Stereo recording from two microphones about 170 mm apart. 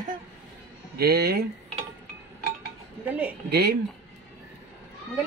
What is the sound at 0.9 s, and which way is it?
Speech, 65° right (ahead or behind).